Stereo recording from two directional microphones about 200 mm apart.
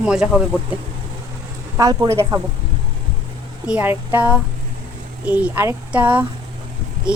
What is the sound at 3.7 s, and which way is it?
Speech, 10° right (ahead or behind).